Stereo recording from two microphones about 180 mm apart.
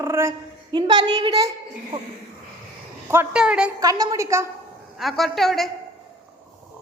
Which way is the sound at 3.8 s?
20° right (ahead or behind).